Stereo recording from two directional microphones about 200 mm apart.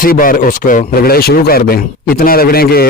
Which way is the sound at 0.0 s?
45° left (ahead or behind).